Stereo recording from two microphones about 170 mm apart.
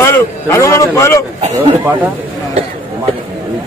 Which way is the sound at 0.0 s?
15° left (ahead or behind).